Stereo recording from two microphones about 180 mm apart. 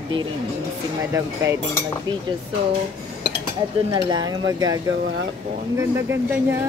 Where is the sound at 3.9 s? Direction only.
20° right (ahead or behind).